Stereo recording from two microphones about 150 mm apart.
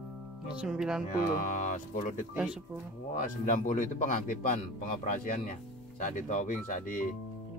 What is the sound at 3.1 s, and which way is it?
Speech, 60° left (ahead or behind).